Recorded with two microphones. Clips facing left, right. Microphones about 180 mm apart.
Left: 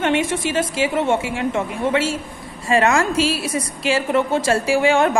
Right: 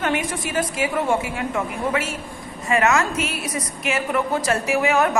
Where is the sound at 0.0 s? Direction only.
25° left (ahead or behind).